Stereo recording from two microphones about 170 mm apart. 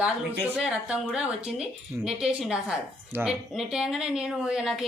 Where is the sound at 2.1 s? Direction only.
5° right (ahead or behind).